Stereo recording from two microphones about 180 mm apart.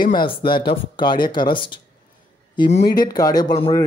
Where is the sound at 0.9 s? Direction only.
25° left (ahead or behind).